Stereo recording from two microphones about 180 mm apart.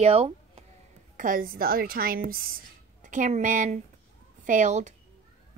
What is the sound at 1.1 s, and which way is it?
Speech, 50° right (ahead or behind).